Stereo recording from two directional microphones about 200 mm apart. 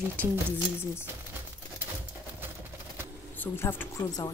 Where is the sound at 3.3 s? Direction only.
10° left (ahead or behind).